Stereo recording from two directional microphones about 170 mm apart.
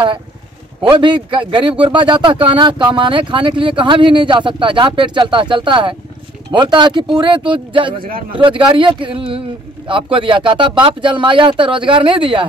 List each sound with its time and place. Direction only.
0.8 s a man's voice: 25° right (ahead or behind)